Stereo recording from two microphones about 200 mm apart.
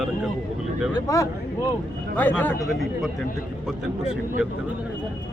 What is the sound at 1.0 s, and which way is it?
Speech, 15° left (ahead or behind).